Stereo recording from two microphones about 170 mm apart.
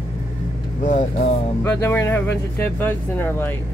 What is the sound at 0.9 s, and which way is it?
Speech, 50° left (ahead or behind).